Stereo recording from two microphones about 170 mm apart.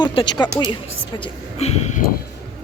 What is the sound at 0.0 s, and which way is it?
Speech, 30° left (ahead or behind).